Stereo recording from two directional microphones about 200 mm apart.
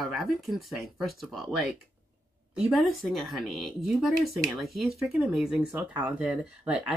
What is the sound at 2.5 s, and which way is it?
Speech, centre (ahead or behind).